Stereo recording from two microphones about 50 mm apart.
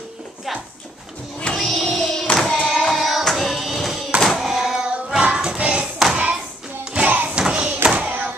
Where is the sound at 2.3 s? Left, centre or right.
Centre.